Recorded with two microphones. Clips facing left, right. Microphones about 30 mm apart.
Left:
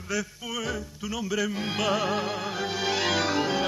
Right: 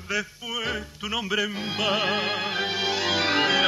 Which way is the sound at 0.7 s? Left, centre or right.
Right.